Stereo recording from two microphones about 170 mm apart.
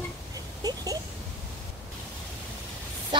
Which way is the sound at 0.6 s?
20° right (ahead or behind).